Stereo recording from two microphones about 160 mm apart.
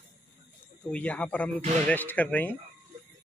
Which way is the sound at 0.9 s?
10° left (ahead or behind).